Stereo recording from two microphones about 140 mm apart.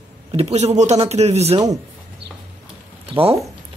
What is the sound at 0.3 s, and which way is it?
A man's voice, 50° right (ahead or behind).